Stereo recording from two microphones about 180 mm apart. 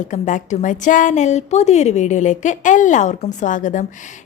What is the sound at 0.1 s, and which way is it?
A woman's voice, 45° left (ahead or behind).